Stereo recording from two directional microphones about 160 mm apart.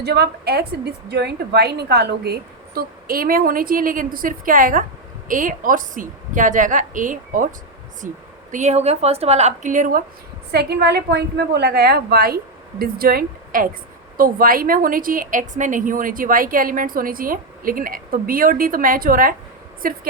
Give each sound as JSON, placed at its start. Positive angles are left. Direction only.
{"t": 0.0, "sound": "a woman's voice", "side_deg": -90}
{"t": 8.5, "sound": "a woman's voice", "side_deg": -45}
{"t": 10.5, "sound": "a woman's voice", "side_deg": -85}